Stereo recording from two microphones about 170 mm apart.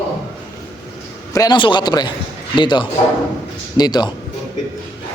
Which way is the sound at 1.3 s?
20° left (ahead or behind).